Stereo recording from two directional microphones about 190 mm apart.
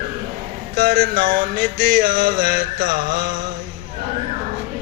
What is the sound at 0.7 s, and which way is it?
Mantra, 55° right (ahead or behind).